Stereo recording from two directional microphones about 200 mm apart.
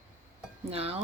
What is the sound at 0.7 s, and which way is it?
Speech, 30° right (ahead or behind).